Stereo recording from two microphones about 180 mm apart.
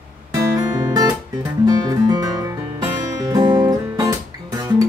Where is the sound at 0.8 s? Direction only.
20° right (ahead or behind).